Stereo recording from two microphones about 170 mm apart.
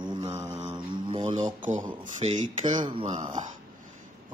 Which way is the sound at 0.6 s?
35° right (ahead or behind).